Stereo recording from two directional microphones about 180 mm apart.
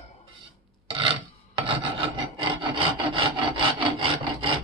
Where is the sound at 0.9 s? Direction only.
30° right (ahead or behind).